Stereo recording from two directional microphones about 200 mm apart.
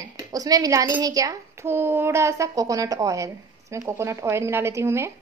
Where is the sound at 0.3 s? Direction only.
20° right (ahead or behind).